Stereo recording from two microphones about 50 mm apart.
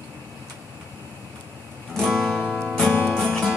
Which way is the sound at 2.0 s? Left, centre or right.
Centre.